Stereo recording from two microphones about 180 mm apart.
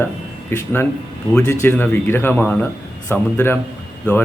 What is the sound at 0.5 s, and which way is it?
Speech, 15° left (ahead or behind).